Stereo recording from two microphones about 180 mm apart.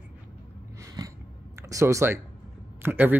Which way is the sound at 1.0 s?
20° right (ahead or behind).